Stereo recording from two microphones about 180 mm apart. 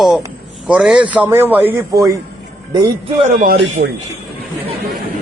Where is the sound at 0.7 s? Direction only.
5° right (ahead or behind).